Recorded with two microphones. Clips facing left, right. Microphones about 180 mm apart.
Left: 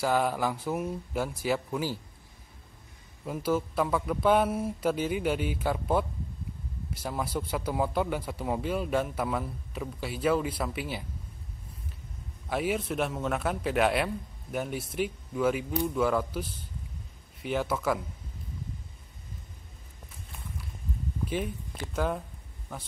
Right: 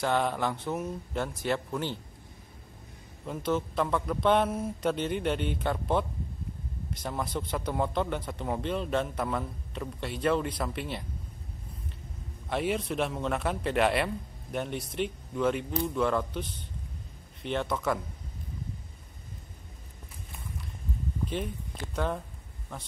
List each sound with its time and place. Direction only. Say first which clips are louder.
0.0 s a man's voice: left 1 dB; 5° left (ahead or behind)
3.3 s a man's voice: left 1 dB; 5° left (ahead or behind)
12.4 s a man's voice: even; centre (ahead or behind)
21.9 s a man's voice: left 1 dB; 5° left (ahead or behind)